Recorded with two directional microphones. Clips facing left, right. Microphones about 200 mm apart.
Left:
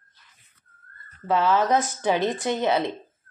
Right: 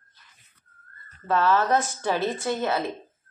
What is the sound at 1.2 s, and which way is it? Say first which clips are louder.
A woman's voice: left 1 dB; 10° left (ahead or behind).